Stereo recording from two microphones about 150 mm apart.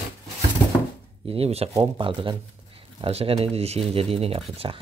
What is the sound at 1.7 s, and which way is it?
Speech, 30° right (ahead or behind).